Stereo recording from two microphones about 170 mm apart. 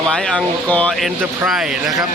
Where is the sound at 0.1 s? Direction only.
5° left (ahead or behind).